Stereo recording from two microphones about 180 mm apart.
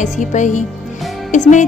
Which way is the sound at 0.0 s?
40° left (ahead or behind).